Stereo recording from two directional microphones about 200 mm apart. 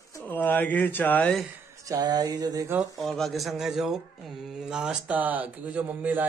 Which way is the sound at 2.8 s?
Centre (ahead or behind).